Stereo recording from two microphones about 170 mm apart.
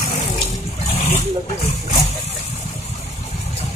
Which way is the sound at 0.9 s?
35° left (ahead or behind).